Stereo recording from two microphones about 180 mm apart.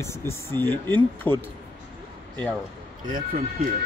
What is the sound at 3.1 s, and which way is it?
Speech, 50° right (ahead or behind).